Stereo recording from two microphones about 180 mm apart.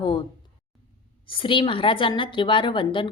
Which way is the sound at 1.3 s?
30° left (ahead or behind).